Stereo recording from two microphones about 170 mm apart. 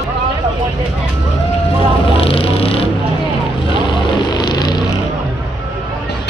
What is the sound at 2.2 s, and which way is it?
Vehicle, 35° left (ahead or behind).